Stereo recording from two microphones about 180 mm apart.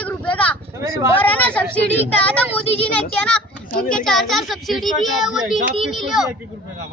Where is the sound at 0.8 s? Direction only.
15° right (ahead or behind).